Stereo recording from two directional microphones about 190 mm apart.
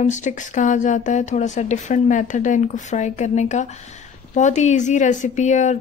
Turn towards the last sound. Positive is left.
turn(degrees=40)  # may be behind; listen again after turning